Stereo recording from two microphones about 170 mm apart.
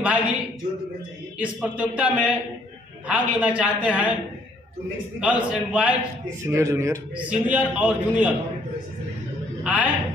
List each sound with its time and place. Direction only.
0.0 s a man's voice: 5° right (ahead or behind)
1.4 s a man's voice: 5° right (ahead or behind)
5.2 s a man's voice: 5° right (ahead or behind)
9.6 s a sound: 10° right (ahead or behind)